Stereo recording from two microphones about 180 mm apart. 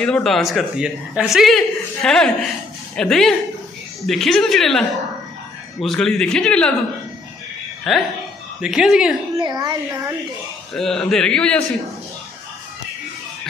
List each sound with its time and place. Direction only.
0.0 s speech: 5° left (ahead or behind)
7.9 s speech: centre (ahead or behind)
9.3 s a child's voice: 20° right (ahead or behind)
10.7 s speech: centre (ahead or behind)